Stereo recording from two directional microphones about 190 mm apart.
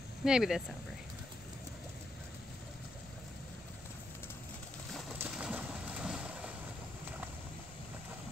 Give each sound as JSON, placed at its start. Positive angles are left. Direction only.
{"t": 0.2, "sound": "speech", "side_deg": -5}
{"t": 5.2, "sound": "boat", "side_deg": -5}